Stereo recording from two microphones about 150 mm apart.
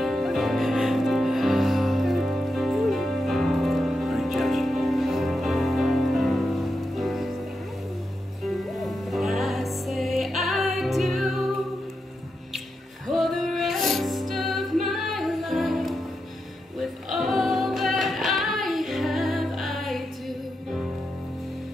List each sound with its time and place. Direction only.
0.0 s music: centre (ahead or behind)
8.7 s music: centre (ahead or behind)
13.0 s music: centre (ahead or behind)
17.1 s singing: centre (ahead or behind)